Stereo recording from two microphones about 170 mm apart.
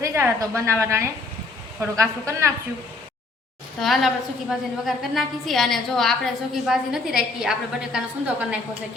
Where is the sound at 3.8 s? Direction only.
Centre (ahead or behind).